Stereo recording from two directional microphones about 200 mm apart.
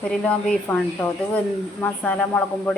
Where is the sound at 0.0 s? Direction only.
5° left (ahead or behind).